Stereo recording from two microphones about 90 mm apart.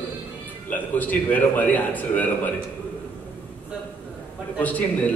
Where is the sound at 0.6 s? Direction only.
20° left (ahead or behind).